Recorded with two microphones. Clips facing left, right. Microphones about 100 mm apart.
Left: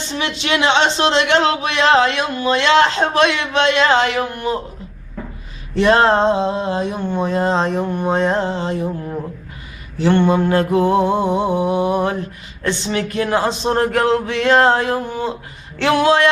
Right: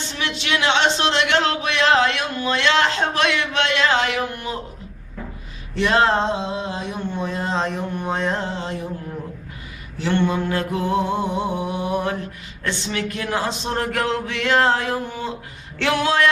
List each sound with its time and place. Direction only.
0.4 s speech: 30° left (ahead or behind)
5.7 s a sound: 40° left (ahead or behind)
15.8 s speech: 30° left (ahead or behind)